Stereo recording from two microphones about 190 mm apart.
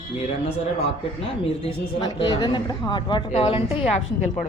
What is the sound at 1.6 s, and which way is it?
A woman's voice, 25° left (ahead or behind).